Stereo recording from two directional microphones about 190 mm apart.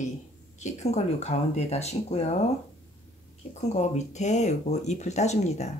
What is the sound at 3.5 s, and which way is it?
Speech, 35° left (ahead or behind).